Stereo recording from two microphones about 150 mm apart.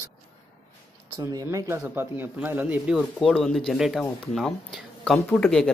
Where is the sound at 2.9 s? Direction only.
Centre (ahead or behind).